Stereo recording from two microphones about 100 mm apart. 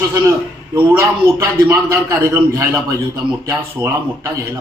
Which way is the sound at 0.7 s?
20° right (ahead or behind).